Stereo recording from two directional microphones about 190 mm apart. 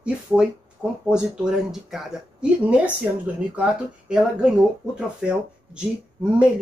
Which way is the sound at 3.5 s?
5° right (ahead or behind).